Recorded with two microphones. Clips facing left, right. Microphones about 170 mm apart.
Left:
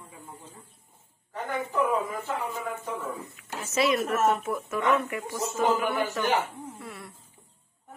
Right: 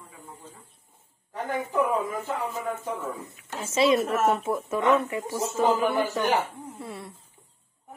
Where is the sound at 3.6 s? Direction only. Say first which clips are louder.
Right 3 dB; 30° right (ahead or behind).